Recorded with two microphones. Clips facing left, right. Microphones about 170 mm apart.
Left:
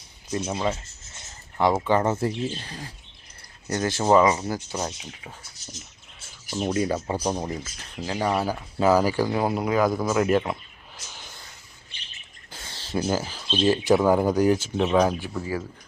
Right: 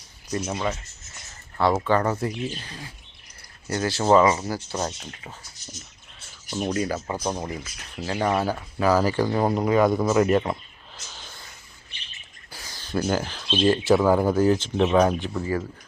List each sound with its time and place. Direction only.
0.5 s speech: 25° left (ahead or behind)
3.7 s speech: 20° left (ahead or behind)
6.5 s speech: centre (ahead or behind)
6.7 s speech: 25° left (ahead or behind)
7.2 s speech: 10° left (ahead or behind)
11.1 s a sound: 15° left (ahead or behind)
12.5 s a sound: 25° left (ahead or behind)
13.1 s speech: 5° left (ahead or behind)
13.8 s speech: 20° left (ahead or behind)